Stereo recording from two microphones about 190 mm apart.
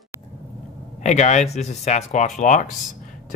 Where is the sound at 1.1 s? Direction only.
40° left (ahead or behind).